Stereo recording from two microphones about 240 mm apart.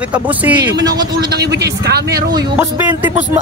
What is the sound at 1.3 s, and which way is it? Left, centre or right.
Speech, right.